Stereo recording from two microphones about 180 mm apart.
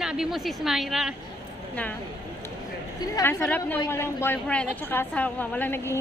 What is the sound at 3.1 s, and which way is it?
A woman's voice, 10° left (ahead or behind).